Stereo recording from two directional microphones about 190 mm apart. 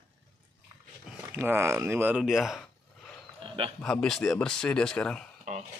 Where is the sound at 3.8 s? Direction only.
5° left (ahead or behind).